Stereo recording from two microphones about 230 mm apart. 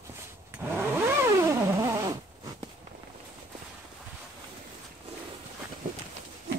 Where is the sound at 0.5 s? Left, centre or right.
Centre.